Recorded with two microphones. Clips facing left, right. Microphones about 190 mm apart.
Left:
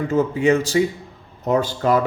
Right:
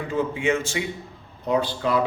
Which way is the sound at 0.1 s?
40° left (ahead or behind).